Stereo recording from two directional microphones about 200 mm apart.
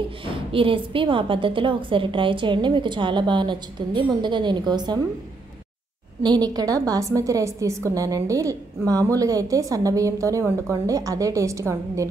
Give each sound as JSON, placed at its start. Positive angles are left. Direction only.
{"t": 0.2, "sound": "a woman's voice", "side_deg": -25}
{"t": 6.2, "sound": "a woman's voice", "side_deg": -20}